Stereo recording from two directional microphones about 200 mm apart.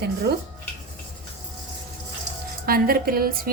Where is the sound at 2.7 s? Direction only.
50° right (ahead or behind).